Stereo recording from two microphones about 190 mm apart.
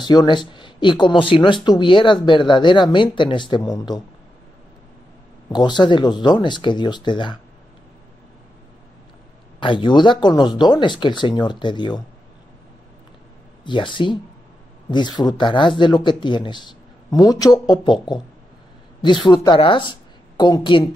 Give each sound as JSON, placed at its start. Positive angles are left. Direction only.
{"t": 0.0, "sound": "speech", "side_deg": 20}
{"t": 5.5, "sound": "speech", "side_deg": 25}
{"t": 9.6, "sound": "speech", "side_deg": 25}
{"t": 13.7, "sound": "speech", "side_deg": 25}
{"t": 19.0, "sound": "a woman's voice", "side_deg": 25}